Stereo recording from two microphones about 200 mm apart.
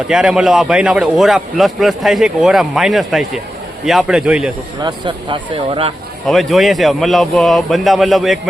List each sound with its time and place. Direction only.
0.1 s a man's voice: 5° right (ahead or behind)
4.8 s speech: 20° right (ahead or behind)
6.2 s a man's voice: centre (ahead or behind)